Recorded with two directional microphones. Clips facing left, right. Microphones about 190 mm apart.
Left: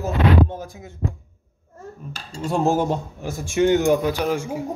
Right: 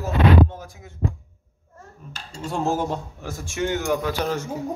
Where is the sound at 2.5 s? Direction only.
15° left (ahead or behind).